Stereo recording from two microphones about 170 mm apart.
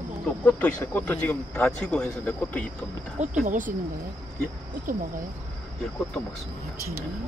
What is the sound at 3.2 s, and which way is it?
Speech, 50° right (ahead or behind).